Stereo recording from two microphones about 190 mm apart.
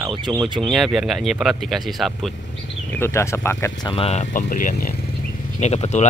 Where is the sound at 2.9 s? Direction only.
10° left (ahead or behind).